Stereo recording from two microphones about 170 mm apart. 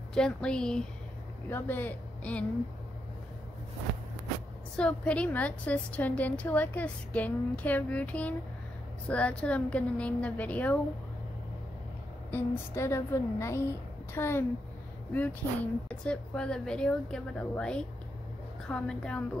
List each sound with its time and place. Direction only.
0.1 s a woman's voice: 5° left (ahead or behind)
4.7 s a woman's voice: 5° left (ahead or behind)
12.3 s a woman's voice: 15° left (ahead or behind)